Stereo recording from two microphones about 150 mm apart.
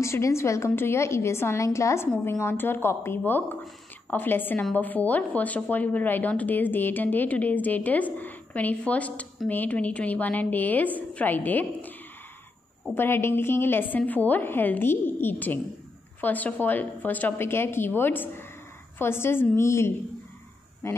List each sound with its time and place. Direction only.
0.0 s a woman's voice: 20° left (ahead or behind)
12.9 s a woman's voice: 15° left (ahead or behind)